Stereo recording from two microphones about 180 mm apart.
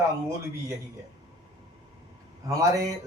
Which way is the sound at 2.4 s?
20° right (ahead or behind).